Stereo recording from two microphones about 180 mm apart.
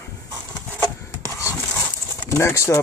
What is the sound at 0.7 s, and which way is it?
Rub, 15° left (ahead or behind).